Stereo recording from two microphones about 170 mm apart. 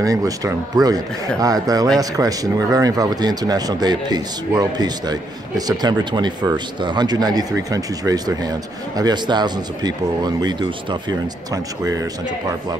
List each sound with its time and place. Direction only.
0.0 s speech: 20° right (ahead or behind)